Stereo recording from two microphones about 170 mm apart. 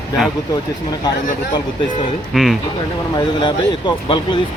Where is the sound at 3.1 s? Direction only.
25° left (ahead or behind).